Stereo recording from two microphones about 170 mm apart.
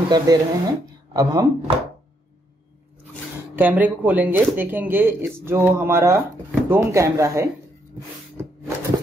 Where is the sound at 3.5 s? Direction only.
10° right (ahead or behind).